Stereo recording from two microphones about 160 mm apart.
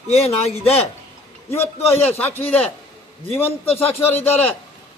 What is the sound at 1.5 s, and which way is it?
A man's voice, 15° left (ahead or behind).